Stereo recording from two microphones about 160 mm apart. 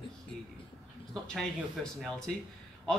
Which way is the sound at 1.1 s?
Centre (ahead or behind).